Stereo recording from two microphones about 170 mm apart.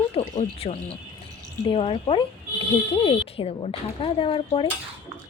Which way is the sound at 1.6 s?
30° left (ahead or behind).